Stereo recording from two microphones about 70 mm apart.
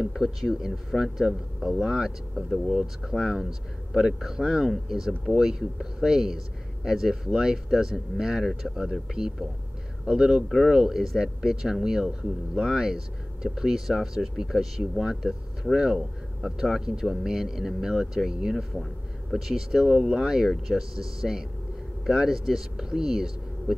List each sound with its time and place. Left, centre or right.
0.2 s speech: centre